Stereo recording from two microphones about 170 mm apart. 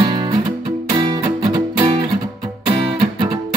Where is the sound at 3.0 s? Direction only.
30° right (ahead or behind).